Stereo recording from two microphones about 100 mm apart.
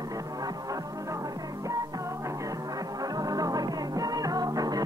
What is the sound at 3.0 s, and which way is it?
Music, 40° right (ahead or behind).